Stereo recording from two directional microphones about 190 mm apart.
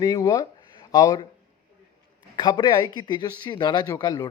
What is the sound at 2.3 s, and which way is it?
Speech, 25° left (ahead or behind).